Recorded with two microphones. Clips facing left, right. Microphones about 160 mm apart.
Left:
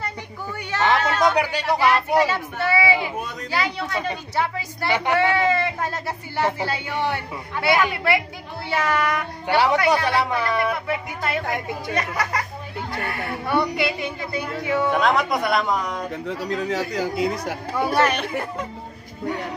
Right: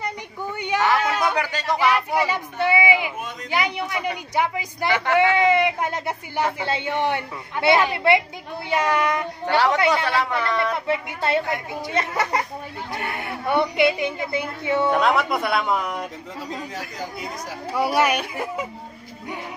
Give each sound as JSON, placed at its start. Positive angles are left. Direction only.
{"t": 0.0, "sound": "a sound", "side_deg": -20}
{"t": 1.3, "sound": "speech", "side_deg": 15}
{"t": 1.9, "sound": "a woman's voice", "side_deg": -15}
{"t": 10.0, "sound": "speech", "side_deg": 15}
{"t": 10.9, "sound": "a woman's voice", "side_deg": -30}
{"t": 14.9, "sound": "speech", "side_deg": 0}
{"t": 16.3, "sound": "speech", "side_deg": 80}
{"t": 17.7, "sound": "a woman's voice", "side_deg": -10}